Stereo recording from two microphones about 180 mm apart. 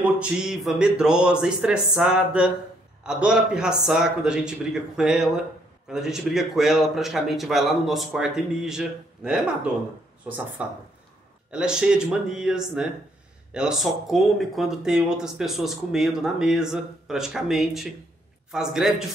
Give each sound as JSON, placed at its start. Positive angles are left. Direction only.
{"t": 0.0, "sound": "speech", "side_deg": -5}